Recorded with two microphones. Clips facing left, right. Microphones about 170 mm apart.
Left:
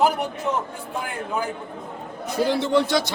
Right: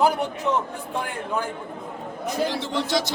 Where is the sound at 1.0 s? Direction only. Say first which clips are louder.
Left 3 dB; 5° left (ahead or behind).